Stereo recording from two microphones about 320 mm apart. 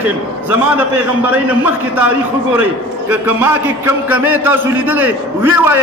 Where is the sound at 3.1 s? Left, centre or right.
Centre.